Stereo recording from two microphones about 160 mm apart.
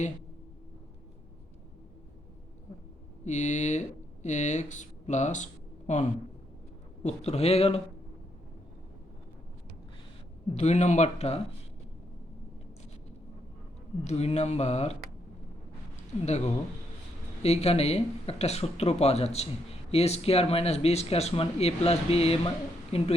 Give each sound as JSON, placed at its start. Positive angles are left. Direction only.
{"t": 3.2, "sound": "speech", "side_deg": 50}
{"t": 10.5, "sound": "speech", "side_deg": 45}
{"t": 14.0, "sound": "speech", "side_deg": 45}
{"t": 16.2, "sound": "a woman's voice", "side_deg": 45}